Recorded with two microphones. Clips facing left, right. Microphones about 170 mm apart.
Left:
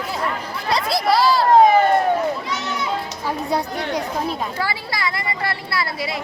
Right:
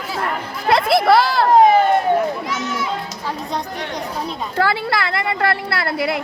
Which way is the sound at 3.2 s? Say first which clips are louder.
Left 3 dB; 10° left (ahead or behind).